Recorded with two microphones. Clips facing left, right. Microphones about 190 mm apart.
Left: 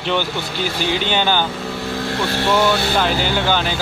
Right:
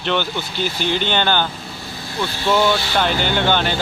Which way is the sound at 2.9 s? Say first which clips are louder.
Left 1 dB; 5° left (ahead or behind).